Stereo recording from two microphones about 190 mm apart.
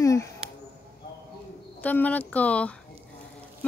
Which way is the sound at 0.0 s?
15° left (ahead or behind).